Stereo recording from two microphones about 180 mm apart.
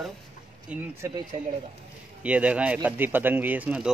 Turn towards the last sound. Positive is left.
turn(degrees=-5)  # may be behind; listen again after turning